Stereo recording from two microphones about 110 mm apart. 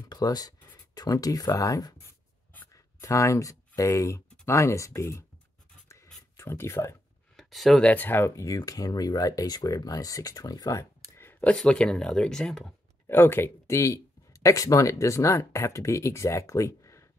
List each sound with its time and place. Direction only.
0.1 s speech: 35° left (ahead or behind)
2.0 s writing: 15° left (ahead or behind)
2.7 s speech: 30° left (ahead or behind)
6.3 s speech: 25° left (ahead or behind)
7.3 s speech: centre (ahead or behind)
7.9 s speech: 15° left (ahead or behind); by 10.9 s 30° left (ahead or behind)
11.1 s a sound: 20° left (ahead or behind)
11.5 s speech: 5° left (ahead or behind)
13.0 s speech: 20° left (ahead or behind)